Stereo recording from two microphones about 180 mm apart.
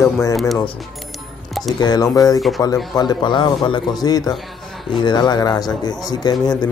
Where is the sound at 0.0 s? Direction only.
15° left (ahead or behind).